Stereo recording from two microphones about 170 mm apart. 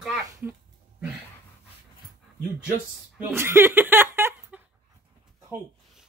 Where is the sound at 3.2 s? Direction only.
15° right (ahead or behind).